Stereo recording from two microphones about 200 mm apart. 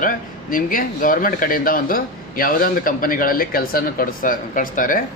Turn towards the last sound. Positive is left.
turn(degrees=45)  # may be behind; listen again after turning